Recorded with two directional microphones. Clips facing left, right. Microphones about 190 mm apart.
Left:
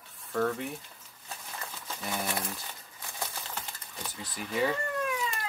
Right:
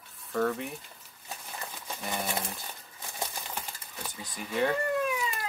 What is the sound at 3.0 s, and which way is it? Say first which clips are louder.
Crumpling: right 2 dB; 15° right (ahead or behind).